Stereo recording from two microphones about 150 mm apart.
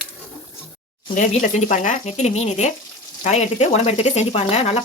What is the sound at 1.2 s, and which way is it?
Speech, 60° left (ahead or behind).